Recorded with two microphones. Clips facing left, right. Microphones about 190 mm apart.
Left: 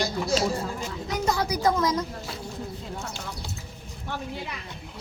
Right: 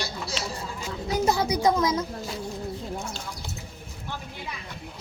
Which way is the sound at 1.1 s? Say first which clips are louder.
Right 3 dB; 25° right (ahead or behind).